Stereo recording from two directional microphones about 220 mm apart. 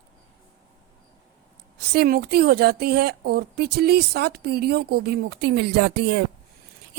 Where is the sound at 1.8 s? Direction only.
45° right (ahead or behind).